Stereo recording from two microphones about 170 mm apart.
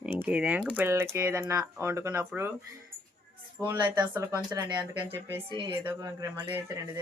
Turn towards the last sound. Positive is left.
turn(degrees=-20)  # may be behind; listen again after turning